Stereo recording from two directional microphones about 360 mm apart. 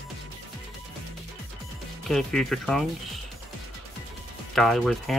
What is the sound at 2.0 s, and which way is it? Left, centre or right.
Speech, centre.